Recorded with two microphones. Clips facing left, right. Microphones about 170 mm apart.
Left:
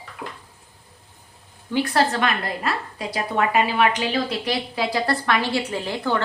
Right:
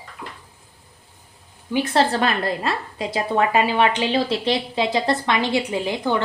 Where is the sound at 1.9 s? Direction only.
30° right (ahead or behind).